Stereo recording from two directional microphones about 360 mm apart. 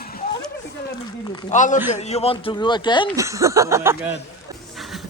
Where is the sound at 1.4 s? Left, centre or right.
Left.